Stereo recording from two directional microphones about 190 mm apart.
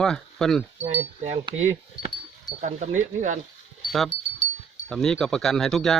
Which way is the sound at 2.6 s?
40° right (ahead or behind).